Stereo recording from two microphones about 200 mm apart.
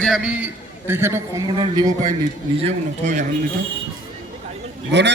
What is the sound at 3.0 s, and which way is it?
Speech, 35° right (ahead or behind).